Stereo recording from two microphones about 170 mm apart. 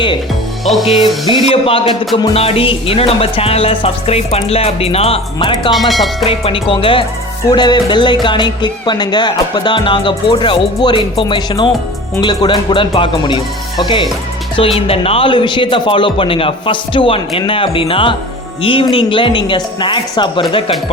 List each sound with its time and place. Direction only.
0.9 s music: 35° left (ahead or behind)
5.7 s speech: centre (ahead or behind)
6.2 s music: 35° left (ahead or behind)
7.5 s speech: 25° left (ahead or behind)
14.8 s music: 35° left (ahead or behind)
19.5 s speech: 30° left (ahead or behind)